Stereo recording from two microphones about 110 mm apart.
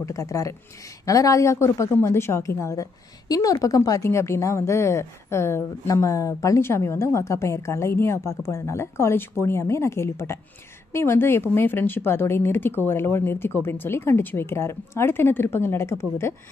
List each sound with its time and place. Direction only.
0.0 s a woman's voice: 30° left (ahead or behind)